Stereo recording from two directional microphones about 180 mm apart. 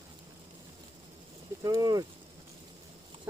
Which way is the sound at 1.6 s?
20° right (ahead or behind).